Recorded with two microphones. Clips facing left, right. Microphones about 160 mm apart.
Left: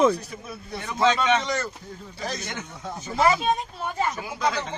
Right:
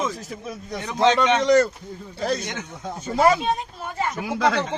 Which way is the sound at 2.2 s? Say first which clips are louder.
Right 8 dB; 65° right (ahead or behind).